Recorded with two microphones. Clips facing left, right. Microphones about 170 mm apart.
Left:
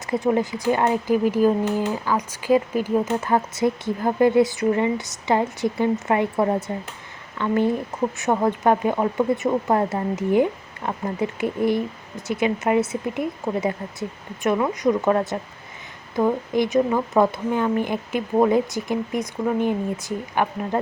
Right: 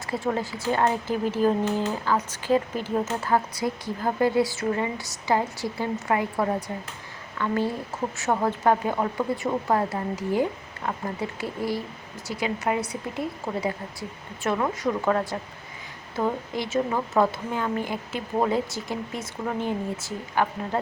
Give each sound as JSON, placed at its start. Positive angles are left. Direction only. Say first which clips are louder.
{"t": 0.1, "sound": "speech", "louder": "left 6 dB", "side_deg": 20}